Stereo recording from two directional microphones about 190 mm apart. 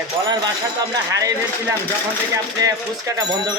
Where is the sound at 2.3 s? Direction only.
20° right (ahead or behind).